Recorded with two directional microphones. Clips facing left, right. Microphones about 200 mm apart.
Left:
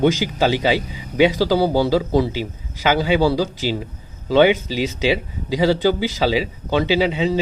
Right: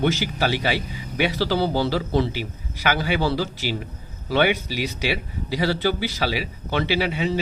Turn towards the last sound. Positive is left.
turn(degrees=20)  # may be behind; listen again after turning